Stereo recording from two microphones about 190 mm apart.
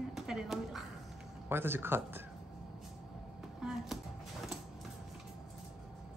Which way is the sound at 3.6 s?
Centre (ahead or behind).